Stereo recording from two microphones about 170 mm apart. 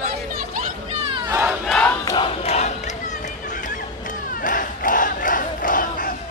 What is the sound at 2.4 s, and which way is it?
Crowd, 40° left (ahead or behind).